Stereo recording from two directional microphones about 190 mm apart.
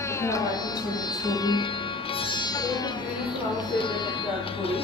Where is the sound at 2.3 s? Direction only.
20° left (ahead or behind).